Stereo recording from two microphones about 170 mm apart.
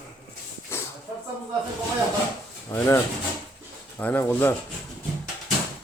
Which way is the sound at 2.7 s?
15° left (ahead or behind).